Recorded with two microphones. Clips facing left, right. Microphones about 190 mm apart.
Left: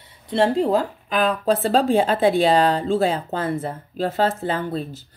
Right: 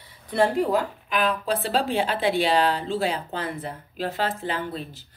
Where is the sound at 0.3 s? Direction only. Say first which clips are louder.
Left 3 dB; 30° left (ahead or behind).